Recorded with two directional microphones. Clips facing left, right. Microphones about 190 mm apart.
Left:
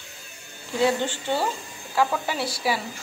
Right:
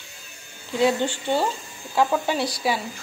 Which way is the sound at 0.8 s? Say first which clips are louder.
Right 2 dB; 15° right (ahead or behind).